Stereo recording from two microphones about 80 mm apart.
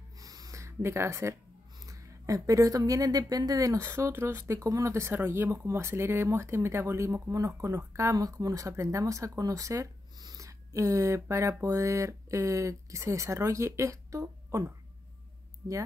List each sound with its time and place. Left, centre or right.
0.2 s a sound: right
1.9 s speech: right
3.9 s speech: right
4.9 s speech: right